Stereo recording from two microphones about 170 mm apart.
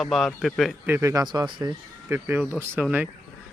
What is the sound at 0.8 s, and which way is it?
Speech, 15° right (ahead or behind).